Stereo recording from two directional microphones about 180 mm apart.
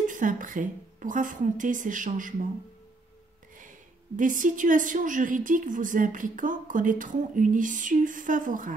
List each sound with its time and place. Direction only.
0.1 s a woman's voice: 45° right (ahead or behind)
4.2 s a woman's voice: 45° right (ahead or behind)